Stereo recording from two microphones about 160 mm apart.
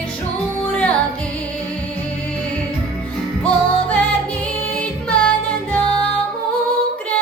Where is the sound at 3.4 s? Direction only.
10° left (ahead or behind).